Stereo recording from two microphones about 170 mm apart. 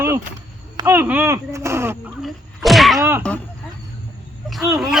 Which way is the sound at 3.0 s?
15° right (ahead or behind).